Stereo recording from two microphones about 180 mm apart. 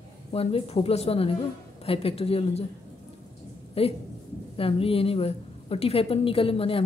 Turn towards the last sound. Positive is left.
turn(degrees=30)  # may be behind; listen again after turning